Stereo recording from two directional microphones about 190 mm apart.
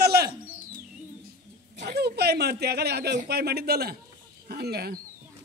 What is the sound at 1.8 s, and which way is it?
Speech, 60° right (ahead or behind).